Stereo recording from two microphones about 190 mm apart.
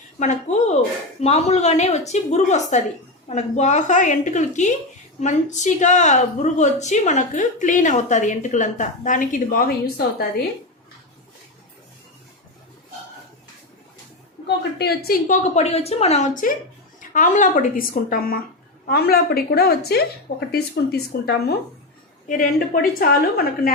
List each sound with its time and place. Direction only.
0.2 s a woman's voice: 40° left (ahead or behind); by 10.4 s 55° left (ahead or behind)
14.4 s a woman's voice: 55° left (ahead or behind)
15.5 s a woman's voice: 35° left (ahead or behind); by 20.0 s 55° left (ahead or behind)
21.1 s a woman's voice: 55° left (ahead or behind)